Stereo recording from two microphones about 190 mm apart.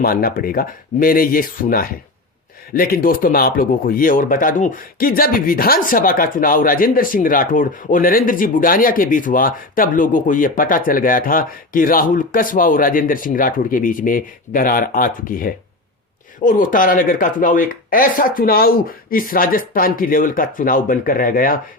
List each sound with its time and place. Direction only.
0.0 s speech: 50° left (ahead or behind)